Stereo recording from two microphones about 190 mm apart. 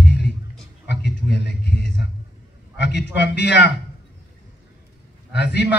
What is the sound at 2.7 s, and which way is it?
Speech, 65° left (ahead or behind).